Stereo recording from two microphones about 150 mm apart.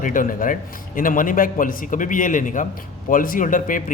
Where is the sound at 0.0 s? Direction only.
65° left (ahead or behind).